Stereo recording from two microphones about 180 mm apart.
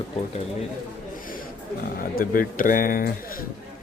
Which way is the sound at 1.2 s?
50° left (ahead or behind).